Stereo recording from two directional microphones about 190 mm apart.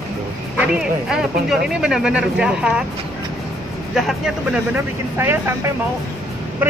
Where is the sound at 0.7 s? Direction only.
5° right (ahead or behind).